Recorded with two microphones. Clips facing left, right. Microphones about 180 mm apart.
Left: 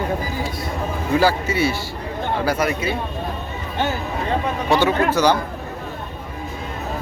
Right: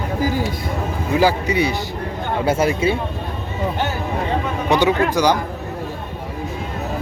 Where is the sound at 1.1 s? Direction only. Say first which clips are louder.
Right 2 dB; 15° right (ahead or behind).